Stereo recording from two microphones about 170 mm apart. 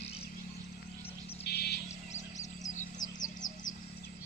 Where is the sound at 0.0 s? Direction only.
35° left (ahead or behind).